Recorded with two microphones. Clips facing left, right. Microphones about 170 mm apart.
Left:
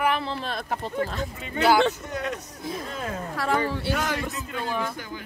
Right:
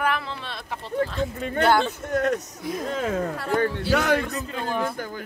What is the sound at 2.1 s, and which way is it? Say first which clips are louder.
Speech: right 8 dB; 50° right (ahead or behind).